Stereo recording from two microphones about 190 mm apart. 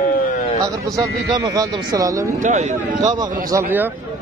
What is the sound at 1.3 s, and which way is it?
Speech, 20° right (ahead or behind).